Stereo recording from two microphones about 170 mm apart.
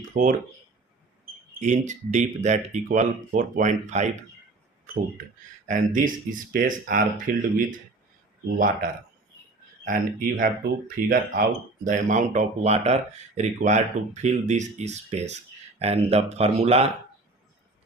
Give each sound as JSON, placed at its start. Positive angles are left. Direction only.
{"t": 0.1, "sound": "speech", "side_deg": -50}
{"t": 1.6, "sound": "speech", "side_deg": -45}
{"t": 5.6, "sound": "speech", "side_deg": -50}
{"t": 8.5, "sound": "speech", "side_deg": -55}